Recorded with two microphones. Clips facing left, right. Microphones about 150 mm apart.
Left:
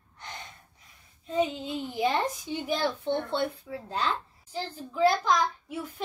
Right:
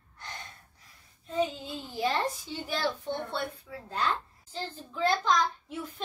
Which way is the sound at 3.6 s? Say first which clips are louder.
Left 1 dB; 30° left (ahead or behind).